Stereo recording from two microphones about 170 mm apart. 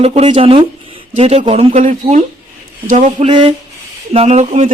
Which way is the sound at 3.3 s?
30° right (ahead or behind).